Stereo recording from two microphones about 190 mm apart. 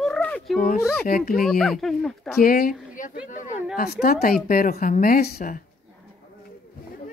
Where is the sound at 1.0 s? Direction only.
50° left (ahead or behind).